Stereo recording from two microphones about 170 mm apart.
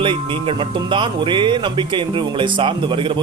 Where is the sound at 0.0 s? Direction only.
30° right (ahead or behind).